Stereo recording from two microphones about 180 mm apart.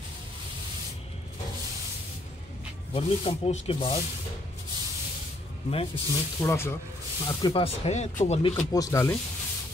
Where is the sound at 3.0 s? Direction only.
30° left (ahead or behind).